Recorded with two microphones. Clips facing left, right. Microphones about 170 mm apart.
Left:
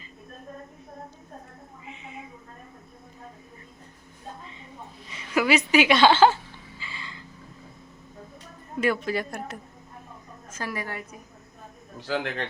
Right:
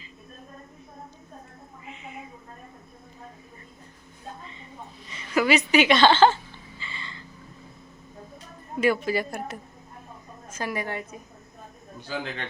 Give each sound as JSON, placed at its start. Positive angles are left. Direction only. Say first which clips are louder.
{"t": 1.9, "sound": "cat", "louder": "right 1 dB", "side_deg": 20}
{"t": 5.1, "sound": "a woman's voice", "louder": "even", "side_deg": 5}
{"t": 6.7, "sound": "a sound", "louder": "right 1 dB", "side_deg": 5}
{"t": 8.8, "sound": "a woman's voice", "louder": "right 2 dB", "side_deg": -5}
{"t": 10.5, "sound": "a woman's voice", "louder": "right 3 dB", "side_deg": -15}
{"t": 11.9, "sound": "a man's voice", "louder": "left 4 dB", "side_deg": 85}